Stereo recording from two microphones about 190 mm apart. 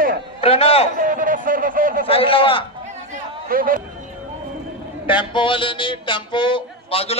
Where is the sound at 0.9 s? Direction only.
45° right (ahead or behind).